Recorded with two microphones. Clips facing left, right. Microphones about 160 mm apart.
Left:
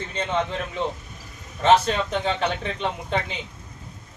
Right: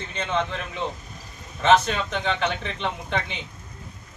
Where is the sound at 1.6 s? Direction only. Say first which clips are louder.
Left 1 dB; 35° left (ahead or behind).